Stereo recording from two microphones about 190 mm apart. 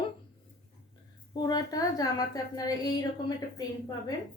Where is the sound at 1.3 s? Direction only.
20° left (ahead or behind).